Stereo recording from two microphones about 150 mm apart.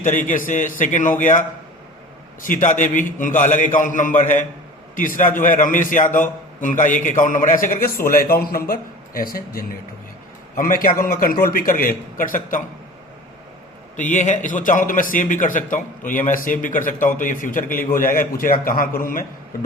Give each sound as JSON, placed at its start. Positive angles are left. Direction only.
{"t": 0.0, "sound": "a man's voice", "side_deg": 60}
{"t": 13.9, "sound": "a man's voice", "side_deg": 55}